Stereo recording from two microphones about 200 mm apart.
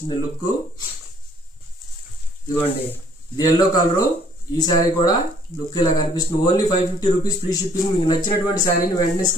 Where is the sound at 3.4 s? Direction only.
20° left (ahead or behind).